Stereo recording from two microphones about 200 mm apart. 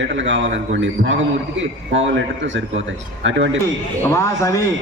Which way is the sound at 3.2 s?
70° right (ahead or behind).